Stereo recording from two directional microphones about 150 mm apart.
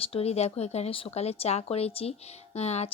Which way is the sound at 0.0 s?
40° left (ahead or behind).